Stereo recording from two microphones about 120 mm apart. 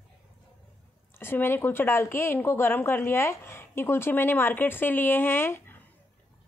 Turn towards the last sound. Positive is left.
turn(degrees=20)  # may be behind; listen again after turning